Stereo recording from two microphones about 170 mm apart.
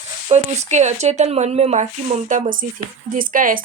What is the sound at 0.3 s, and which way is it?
Speech, 40° right (ahead or behind).